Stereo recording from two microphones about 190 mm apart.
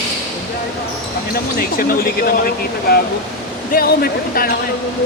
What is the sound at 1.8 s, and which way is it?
Speech, 50° left (ahead or behind).